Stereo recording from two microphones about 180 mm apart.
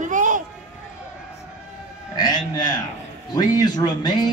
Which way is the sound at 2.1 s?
20° left (ahead or behind).